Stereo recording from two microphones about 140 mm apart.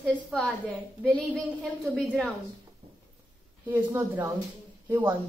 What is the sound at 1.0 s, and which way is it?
A woman's voice, 5° left (ahead or behind).